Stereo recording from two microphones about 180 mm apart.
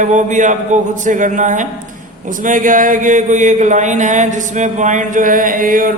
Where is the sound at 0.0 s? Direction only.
45° right (ahead or behind).